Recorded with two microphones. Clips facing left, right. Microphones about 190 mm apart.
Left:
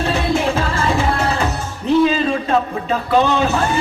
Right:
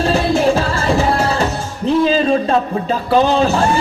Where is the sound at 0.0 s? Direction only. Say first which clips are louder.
Right 4 dB; 30° right (ahead or behind).